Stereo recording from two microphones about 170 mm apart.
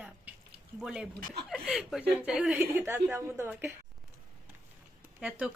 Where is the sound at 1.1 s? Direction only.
60° right (ahead or behind).